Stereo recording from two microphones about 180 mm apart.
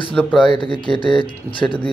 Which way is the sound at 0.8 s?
25° left (ahead or behind).